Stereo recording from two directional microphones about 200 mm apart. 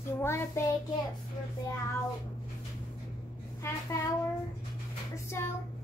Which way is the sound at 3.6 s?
15° left (ahead or behind).